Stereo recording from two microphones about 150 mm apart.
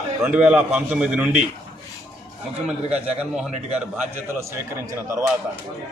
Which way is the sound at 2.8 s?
10° right (ahead or behind).